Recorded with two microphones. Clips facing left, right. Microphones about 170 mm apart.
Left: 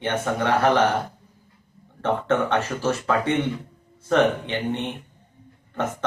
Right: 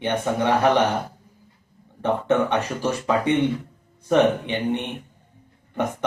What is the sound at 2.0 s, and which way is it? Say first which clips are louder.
Speech: right 2 dB; 15° right (ahead or behind).